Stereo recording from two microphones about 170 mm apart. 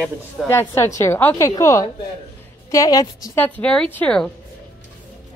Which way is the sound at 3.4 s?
10° left (ahead or behind).